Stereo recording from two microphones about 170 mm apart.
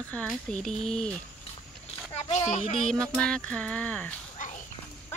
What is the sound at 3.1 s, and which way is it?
Speech, 5° left (ahead or behind).